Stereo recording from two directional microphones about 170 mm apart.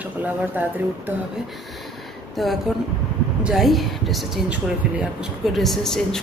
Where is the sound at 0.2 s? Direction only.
10° right (ahead or behind).